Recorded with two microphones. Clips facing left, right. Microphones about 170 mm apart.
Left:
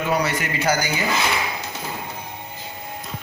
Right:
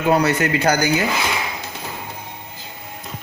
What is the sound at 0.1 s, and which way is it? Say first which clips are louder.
Speech: right 8 dB; 65° right (ahead or behind).